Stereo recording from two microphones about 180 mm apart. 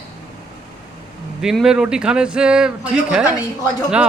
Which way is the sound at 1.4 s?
5° right (ahead or behind).